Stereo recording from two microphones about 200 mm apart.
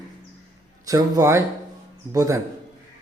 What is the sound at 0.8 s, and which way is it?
Speech, 15° right (ahead or behind).